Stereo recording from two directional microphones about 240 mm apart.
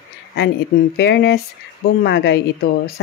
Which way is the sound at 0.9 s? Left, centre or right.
Left.